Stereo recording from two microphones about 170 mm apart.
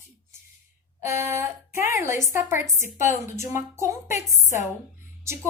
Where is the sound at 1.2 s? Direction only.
15° right (ahead or behind).